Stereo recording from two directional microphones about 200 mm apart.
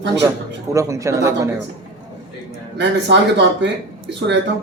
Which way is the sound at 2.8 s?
60° right (ahead or behind).